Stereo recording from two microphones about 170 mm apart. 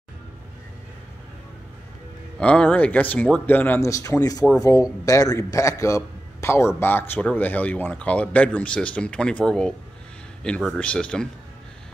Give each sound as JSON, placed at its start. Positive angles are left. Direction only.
{"t": 2.3, "sound": "a man's voice", "side_deg": 5}